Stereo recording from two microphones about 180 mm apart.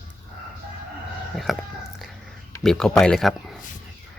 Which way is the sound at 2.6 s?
5° left (ahead or behind).